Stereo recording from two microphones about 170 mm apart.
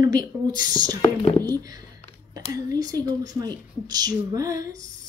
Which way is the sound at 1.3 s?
10° left (ahead or behind).